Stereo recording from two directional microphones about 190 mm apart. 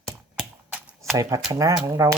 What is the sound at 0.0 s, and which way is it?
Computer keyboard, 5° right (ahead or behind).